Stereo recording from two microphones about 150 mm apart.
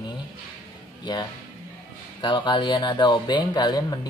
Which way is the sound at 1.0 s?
30° left (ahead or behind).